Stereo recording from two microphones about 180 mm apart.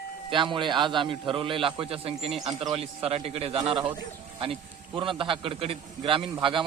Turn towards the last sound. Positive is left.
turn(degrees=-30)  # may be behind; listen again after turning